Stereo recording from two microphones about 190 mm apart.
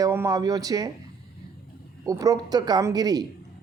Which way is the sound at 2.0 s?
15° right (ahead or behind).